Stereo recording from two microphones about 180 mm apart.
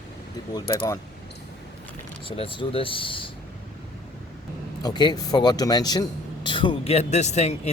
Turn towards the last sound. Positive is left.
turn(degrees=35)  # may be behind; listen again after turning